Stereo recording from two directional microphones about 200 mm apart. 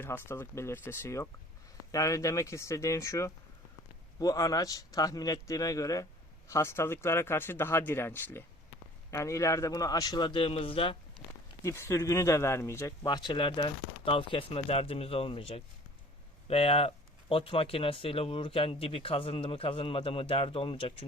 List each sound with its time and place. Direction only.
0.0 s speech: 10° left (ahead or behind)
11.6 s speech: 15° left (ahead or behind)